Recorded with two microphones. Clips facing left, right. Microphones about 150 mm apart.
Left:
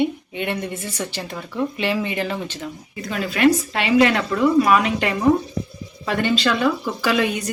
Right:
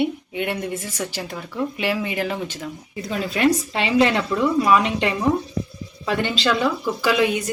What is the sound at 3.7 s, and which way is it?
Speech, 25° right (ahead or behind).